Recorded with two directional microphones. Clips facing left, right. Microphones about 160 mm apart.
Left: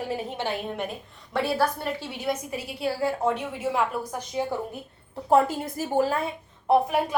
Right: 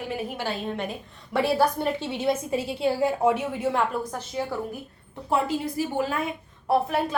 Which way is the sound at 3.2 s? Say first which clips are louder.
Right 3 dB; 5° right (ahead or behind).